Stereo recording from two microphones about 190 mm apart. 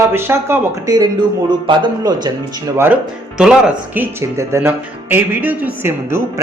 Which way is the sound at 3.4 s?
5° right (ahead or behind).